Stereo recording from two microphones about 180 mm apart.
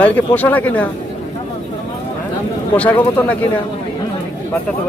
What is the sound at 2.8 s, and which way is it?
Speech, 10° left (ahead or behind).